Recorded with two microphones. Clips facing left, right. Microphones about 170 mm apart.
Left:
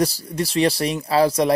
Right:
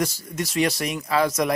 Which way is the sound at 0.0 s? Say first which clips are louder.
Left 5 dB; 35° left (ahead or behind).